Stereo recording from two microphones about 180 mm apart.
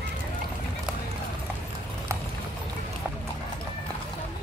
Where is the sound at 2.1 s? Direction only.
15° right (ahead or behind).